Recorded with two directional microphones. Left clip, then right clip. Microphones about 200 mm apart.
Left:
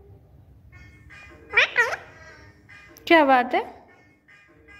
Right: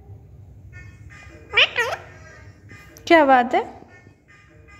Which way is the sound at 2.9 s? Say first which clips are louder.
Right 3 dB; 5° right (ahead or behind).